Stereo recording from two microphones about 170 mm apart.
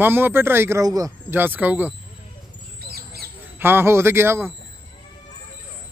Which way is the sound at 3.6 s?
10° right (ahead or behind).